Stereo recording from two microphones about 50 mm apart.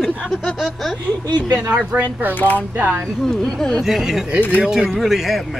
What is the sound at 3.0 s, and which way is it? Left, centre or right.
Speech, centre.